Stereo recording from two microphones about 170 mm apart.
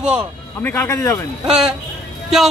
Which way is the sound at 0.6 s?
15° left (ahead or behind).